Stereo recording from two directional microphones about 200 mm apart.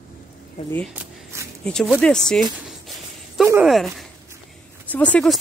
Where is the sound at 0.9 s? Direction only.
15° right (ahead or behind).